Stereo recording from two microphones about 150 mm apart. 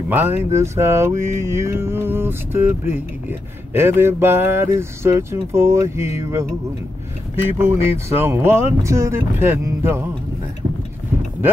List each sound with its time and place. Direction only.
0.1 s mantra: 15° right (ahead or behind)
7.5 s mantra: 15° right (ahead or behind)